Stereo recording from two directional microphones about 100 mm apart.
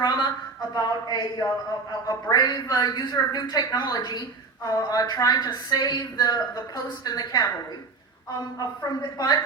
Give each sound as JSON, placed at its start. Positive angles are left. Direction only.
{"t": 0.7, "sound": "a woman's voice", "side_deg": 45}
{"t": 8.5, "sound": "a woman's voice", "side_deg": 40}